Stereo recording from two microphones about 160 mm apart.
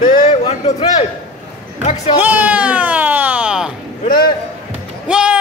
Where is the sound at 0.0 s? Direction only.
45° left (ahead or behind).